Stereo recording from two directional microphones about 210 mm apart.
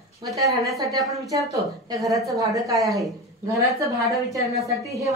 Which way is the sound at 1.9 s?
Centre (ahead or behind).